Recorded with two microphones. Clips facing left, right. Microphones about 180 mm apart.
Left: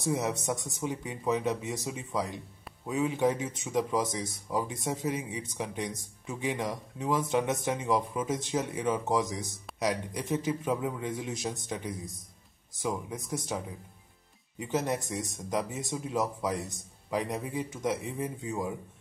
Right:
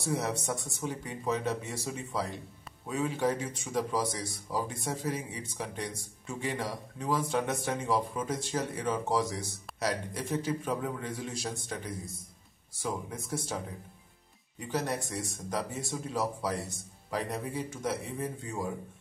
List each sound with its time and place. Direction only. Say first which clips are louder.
0.0 s speech: left 2 dB; 20° left (ahead or behind)
14.7 s speech: left 2 dB; 20° left (ahead or behind)